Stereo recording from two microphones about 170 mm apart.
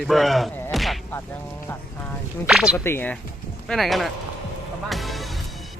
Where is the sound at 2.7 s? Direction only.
10° left (ahead or behind).